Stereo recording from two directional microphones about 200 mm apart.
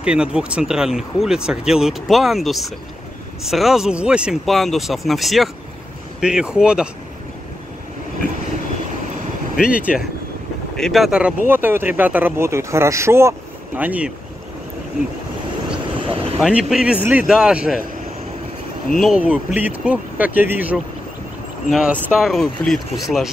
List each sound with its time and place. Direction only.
0.0 s speech: 5° right (ahead or behind)
9.6 s speech: 5° right (ahead or behind)
16.0 s vehicle: 25° right (ahead or behind)
16.3 s speech: centre (ahead or behind)
18.9 s speech: 5° right (ahead or behind)